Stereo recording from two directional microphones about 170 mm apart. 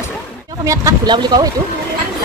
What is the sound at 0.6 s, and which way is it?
Speech, 20° right (ahead or behind).